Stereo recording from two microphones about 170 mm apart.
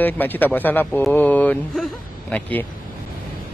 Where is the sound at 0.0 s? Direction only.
10° left (ahead or behind).